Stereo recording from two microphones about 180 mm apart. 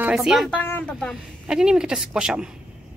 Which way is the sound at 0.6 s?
10° left (ahead or behind).